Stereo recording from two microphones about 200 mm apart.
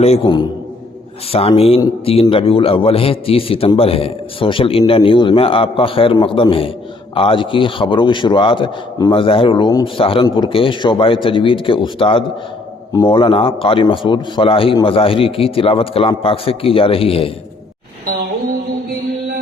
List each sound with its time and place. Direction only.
0.0 s a man's voice: 25° left (ahead or behind)